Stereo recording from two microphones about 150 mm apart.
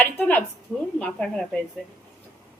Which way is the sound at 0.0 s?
10° left (ahead or behind).